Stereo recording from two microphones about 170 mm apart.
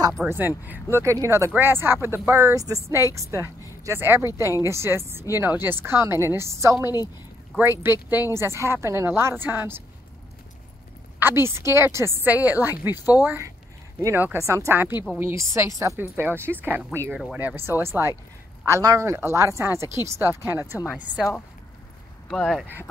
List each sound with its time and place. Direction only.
0.3 s speech: 10° right (ahead or behind)
11.1 s speech: 15° right (ahead or behind)
22.3 s speech: centre (ahead or behind)